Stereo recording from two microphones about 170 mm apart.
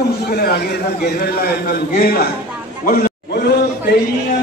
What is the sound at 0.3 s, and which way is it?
A man's voice, 65° left (ahead or behind).